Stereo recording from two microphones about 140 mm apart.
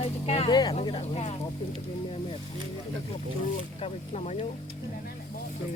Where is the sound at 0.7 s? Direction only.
45° left (ahead or behind).